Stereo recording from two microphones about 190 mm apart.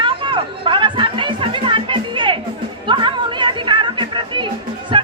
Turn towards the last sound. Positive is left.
turn(degrees=-25)  # may be behind; listen again after turning